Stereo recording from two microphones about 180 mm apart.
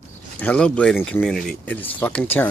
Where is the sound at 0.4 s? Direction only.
5° left (ahead or behind).